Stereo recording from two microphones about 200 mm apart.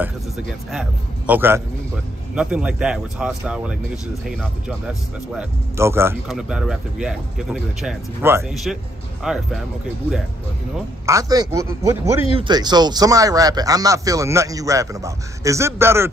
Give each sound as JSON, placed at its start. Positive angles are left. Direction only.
{"t": 0.7, "sound": "speech", "side_deg": -5}
{"t": 6.2, "sound": "speech", "side_deg": 0}
{"t": 11.1, "sound": "speech", "side_deg": -15}